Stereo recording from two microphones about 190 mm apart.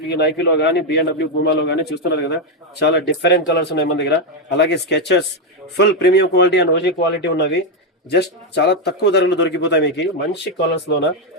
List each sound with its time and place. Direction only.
0.1 s a man's voice: 65° left (ahead or behind)